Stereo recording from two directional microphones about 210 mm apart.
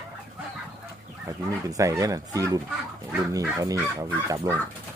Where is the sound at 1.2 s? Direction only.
15° right (ahead or behind).